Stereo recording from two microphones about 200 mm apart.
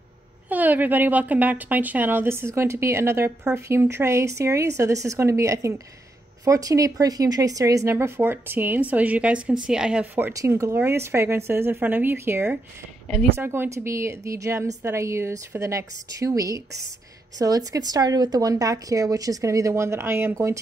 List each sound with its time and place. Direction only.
0.5 s speech: 10° right (ahead or behind)